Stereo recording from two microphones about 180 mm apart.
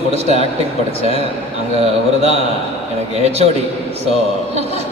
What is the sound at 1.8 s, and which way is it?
A man's voice, 35° right (ahead or behind).